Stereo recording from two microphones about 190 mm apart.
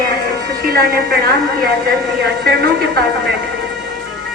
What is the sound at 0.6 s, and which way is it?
Speech, 50° right (ahead or behind).